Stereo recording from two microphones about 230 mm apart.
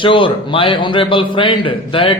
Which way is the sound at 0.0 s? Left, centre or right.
Left.